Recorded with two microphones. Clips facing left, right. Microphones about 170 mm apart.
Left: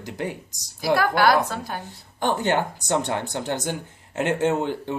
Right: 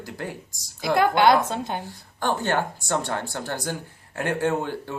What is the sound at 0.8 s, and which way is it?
A woman's voice, 20° right (ahead or behind).